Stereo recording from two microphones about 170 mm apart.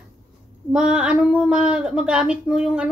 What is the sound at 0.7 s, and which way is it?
A woman's voice, 5° right (ahead or behind).